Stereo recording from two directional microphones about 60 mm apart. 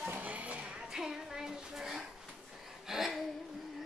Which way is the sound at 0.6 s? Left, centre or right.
Centre.